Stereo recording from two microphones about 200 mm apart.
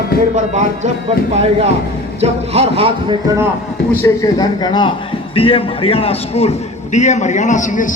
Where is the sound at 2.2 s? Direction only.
30° right (ahead or behind).